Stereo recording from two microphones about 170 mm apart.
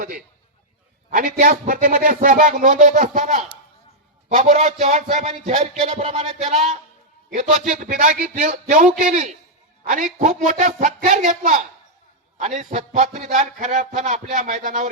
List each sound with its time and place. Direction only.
1.1 s a man's voice: 50° right (ahead or behind)